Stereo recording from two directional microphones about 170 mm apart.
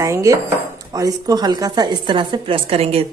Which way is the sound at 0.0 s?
20° right (ahead or behind).